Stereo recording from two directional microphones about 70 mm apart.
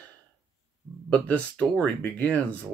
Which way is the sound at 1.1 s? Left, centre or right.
Centre.